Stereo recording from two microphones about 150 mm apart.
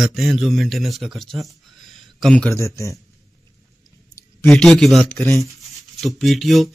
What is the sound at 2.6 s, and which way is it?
Speech, 20° left (ahead or behind).